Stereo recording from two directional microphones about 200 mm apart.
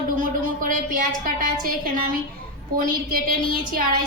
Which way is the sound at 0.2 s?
45° right (ahead or behind).